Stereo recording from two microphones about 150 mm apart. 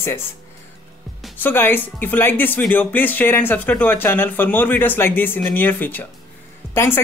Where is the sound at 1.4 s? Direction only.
15° left (ahead or behind).